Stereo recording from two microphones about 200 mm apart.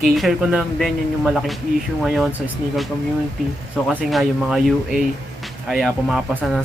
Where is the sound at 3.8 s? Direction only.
Centre (ahead or behind).